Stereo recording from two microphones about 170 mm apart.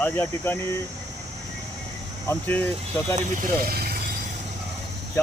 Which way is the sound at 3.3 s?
60° right (ahead or behind).